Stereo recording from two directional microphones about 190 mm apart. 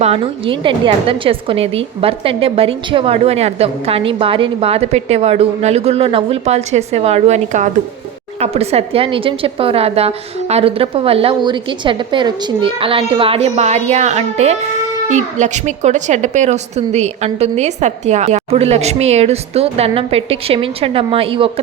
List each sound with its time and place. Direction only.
0.0 s a woman's voice: 30° right (ahead or behind)